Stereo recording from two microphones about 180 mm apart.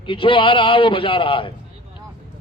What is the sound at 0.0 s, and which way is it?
A man's voice, 30° left (ahead or behind).